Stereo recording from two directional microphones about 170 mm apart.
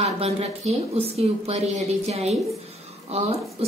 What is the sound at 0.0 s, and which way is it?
A woman's voice, 35° right (ahead or behind).